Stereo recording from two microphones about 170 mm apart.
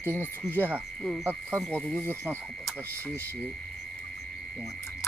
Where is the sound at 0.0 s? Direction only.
10° right (ahead or behind).